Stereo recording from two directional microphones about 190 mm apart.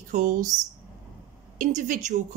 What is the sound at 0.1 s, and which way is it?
Speech, 40° right (ahead or behind).